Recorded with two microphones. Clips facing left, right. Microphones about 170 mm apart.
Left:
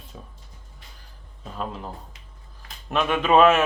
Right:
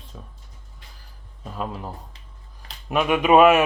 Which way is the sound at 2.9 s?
10° right (ahead or behind).